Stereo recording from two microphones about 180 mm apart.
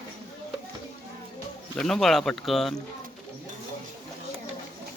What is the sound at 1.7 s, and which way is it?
Speech, centre (ahead or behind).